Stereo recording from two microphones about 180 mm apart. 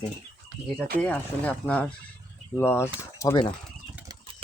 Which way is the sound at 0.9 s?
10° left (ahead or behind).